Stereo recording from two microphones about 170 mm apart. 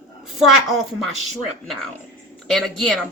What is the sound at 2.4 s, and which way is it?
Speech, 5° left (ahead or behind).